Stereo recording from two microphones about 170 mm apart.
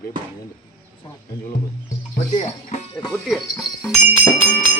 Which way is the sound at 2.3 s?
40° left (ahead or behind).